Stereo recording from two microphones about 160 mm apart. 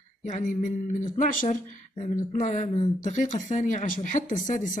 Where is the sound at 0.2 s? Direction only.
50° left (ahead or behind).